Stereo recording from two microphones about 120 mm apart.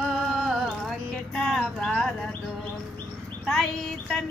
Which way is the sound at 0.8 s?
Centre (ahead or behind).